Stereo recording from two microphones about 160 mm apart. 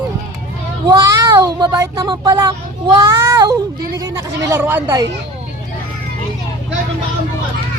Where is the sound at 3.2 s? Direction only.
20° right (ahead or behind).